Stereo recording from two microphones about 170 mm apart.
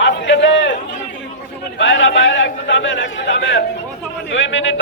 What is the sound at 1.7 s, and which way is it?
A man's voice, 90° left.